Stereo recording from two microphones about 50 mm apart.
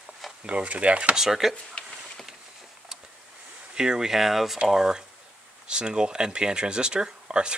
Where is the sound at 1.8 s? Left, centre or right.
Left.